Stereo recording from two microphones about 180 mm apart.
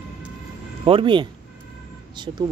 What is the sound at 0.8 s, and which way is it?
Speech, 30° right (ahead or behind).